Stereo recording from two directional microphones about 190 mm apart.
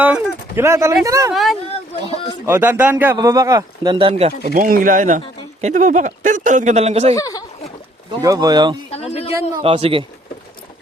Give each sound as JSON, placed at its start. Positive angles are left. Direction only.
{"t": 0.0, "sound": "speech", "side_deg": -10}
{"t": 1.3, "sound": "speech", "side_deg": 0}
{"t": 1.7, "sound": "a sound", "side_deg": 30}
{"t": 2.5, "sound": "speech", "side_deg": -10}
{"t": 4.4, "sound": "speech", "side_deg": -45}
{"t": 7.2, "sound": "speech", "side_deg": 20}
{"t": 8.2, "sound": "speech", "side_deg": -20}
{"t": 8.9, "sound": "a sound", "side_deg": 30}
{"t": 9.6, "sound": "speech", "side_deg": -30}